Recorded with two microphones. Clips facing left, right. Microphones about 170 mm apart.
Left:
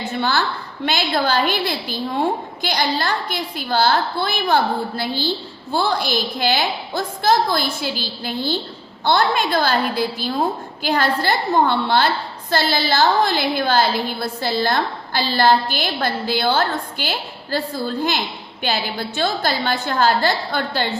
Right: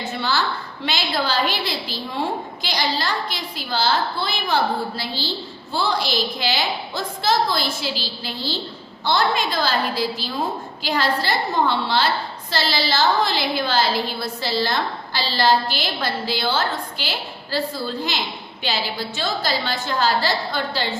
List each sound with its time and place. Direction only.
0.2 s a woman's voice: 55° left (ahead or behind)
18.6 s a woman's voice: 55° left (ahead or behind)